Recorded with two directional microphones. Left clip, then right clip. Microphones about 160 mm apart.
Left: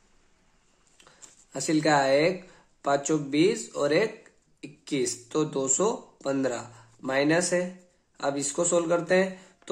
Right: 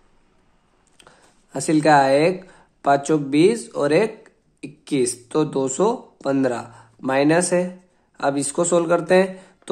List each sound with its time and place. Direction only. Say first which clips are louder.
0.9 s speech: right 3 dB; 30° right (ahead or behind)